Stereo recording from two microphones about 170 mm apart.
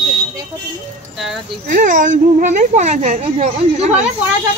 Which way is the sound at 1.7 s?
50° right (ahead or behind).